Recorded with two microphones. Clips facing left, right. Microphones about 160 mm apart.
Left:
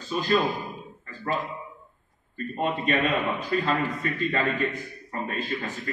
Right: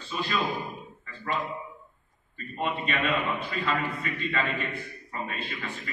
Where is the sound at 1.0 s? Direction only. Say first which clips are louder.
Left 3 dB; 40° left (ahead or behind).